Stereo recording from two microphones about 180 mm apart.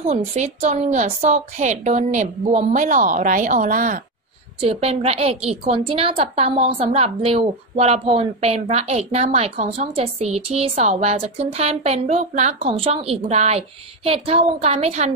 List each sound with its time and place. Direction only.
0.0 s a woman's voice: 35° right (ahead or behind)
4.6 s a woman's voice: 35° right (ahead or behind)